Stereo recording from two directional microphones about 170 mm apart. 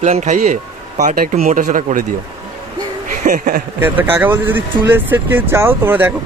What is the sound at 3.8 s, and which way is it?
Speech, 10° right (ahead or behind).